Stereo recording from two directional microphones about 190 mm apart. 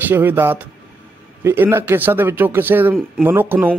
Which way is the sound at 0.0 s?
10° right (ahead or behind).